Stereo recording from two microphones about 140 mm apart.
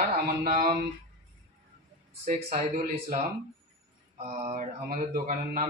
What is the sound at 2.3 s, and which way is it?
Speech, 70° right (ahead or behind).